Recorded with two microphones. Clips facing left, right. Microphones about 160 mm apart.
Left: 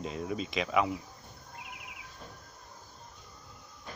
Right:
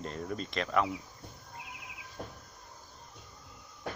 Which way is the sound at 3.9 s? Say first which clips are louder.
Right 7 dB; 70° right (ahead or behind).